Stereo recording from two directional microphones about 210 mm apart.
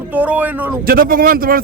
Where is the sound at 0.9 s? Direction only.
45° right (ahead or behind).